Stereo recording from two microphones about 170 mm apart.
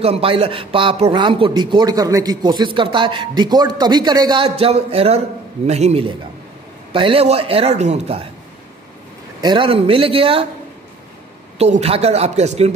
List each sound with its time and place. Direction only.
0.0 s a man's voice: 35° right (ahead or behind)
4.5 s a man's voice: 40° right (ahead or behind)
9.4 s a man's voice: 30° right (ahead or behind)
11.5 s a man's voice: 40° right (ahead or behind)